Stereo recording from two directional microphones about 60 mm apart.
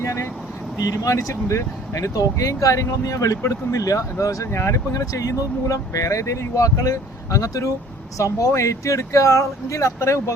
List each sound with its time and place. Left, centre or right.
0.0 s vehicle: left
0.8 s speech: left
2.1 s speech: left
4.5 s speech: left